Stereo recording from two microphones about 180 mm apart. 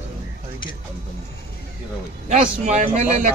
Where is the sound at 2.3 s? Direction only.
40° right (ahead or behind).